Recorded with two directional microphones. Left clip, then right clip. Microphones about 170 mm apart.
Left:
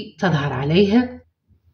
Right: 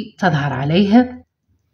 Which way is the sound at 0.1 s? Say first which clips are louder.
Right 4 dB; 40° right (ahead or behind).